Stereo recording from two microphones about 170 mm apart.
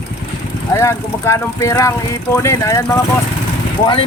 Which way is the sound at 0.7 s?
15° left (ahead or behind).